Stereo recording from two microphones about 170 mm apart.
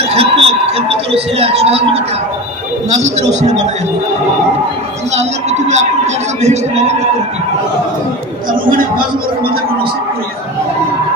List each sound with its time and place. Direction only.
0.1 s speech: 35° right (ahead or behind)
3.0 s a man's voice: 45° right (ahead or behind)
5.1 s speech: 40° right (ahead or behind)
8.5 s speech: 55° right (ahead or behind)